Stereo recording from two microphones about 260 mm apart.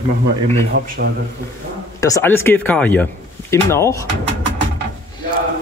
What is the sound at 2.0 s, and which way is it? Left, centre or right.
Speech, centre.